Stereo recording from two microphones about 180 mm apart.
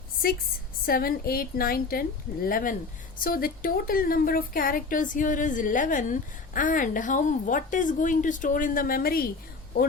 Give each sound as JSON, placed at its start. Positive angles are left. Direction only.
{"t": 0.9, "sound": "a woman's voice", "side_deg": 55}